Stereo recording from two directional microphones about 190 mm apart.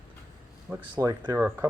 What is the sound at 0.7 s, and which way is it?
Speech, 10° right (ahead or behind).